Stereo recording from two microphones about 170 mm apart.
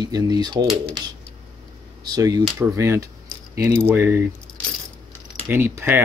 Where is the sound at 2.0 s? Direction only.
25° right (ahead or behind).